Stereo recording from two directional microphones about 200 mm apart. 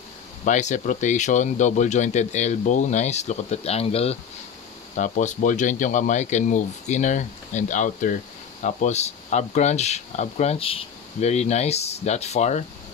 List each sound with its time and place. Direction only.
0.5 s speech: 35° left (ahead or behind)